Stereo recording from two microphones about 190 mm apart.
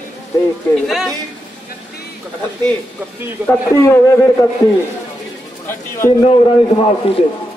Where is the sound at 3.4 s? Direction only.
15° left (ahead or behind).